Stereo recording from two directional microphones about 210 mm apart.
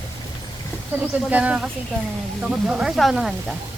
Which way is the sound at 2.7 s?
Centre (ahead or behind).